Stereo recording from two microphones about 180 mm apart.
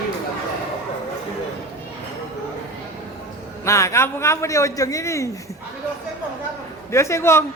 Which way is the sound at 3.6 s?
15° left (ahead or behind).